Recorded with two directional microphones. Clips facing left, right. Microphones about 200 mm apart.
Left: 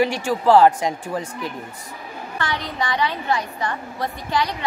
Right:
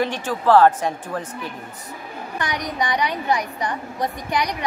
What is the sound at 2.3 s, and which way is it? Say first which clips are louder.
A woman's voice: right 1 dB; 15° right (ahead or behind).